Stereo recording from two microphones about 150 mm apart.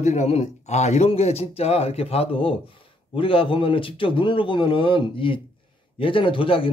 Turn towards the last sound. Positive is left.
turn(degrees=35)  # may be behind; listen again after turning